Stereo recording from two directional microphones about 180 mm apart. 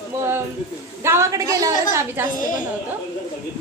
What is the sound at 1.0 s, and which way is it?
A woman's voice, 15° right (ahead or behind).